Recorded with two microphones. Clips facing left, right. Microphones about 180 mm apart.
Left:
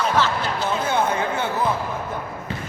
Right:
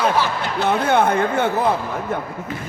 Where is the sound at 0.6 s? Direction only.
60° right (ahead or behind).